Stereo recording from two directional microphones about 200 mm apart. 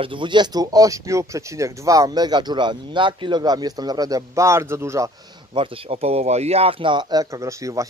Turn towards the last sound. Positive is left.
turn(degrees=-15)  # may be behind; listen again after turning